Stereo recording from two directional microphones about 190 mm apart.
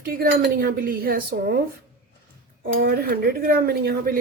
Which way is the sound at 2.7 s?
55° right (ahead or behind).